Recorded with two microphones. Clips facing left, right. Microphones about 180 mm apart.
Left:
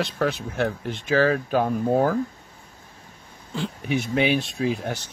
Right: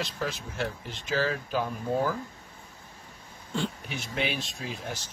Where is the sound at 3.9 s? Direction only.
60° left (ahead or behind).